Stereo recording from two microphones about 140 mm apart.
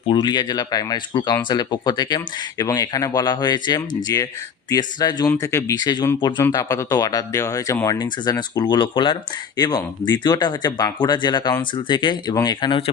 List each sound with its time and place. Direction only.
0.1 s speech: 30° left (ahead or behind)
5.3 s speech: 20° left (ahead or behind)
6.4 s speech: 20° left (ahead or behind)